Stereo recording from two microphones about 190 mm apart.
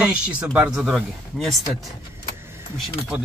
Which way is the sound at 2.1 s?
15° right (ahead or behind).